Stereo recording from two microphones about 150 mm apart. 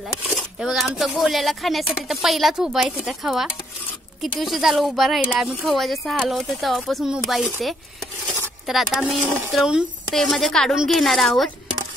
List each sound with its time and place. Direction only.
0.3 s speech: centre (ahead or behind)